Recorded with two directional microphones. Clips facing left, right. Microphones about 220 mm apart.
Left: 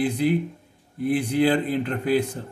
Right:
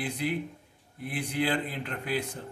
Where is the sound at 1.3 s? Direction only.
35° left (ahead or behind).